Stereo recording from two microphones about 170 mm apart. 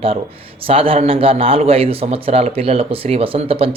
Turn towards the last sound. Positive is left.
turn(degrees=-35)  # may be behind; listen again after turning